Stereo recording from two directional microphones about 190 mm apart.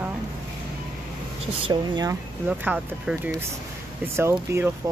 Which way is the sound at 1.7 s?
20° right (ahead or behind).